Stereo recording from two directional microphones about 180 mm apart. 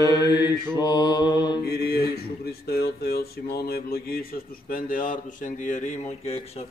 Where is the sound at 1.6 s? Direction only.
60° left (ahead or behind).